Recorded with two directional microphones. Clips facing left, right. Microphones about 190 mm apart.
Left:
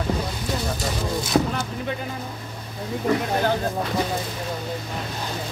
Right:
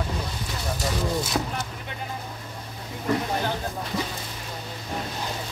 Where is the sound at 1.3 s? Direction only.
25° left (ahead or behind).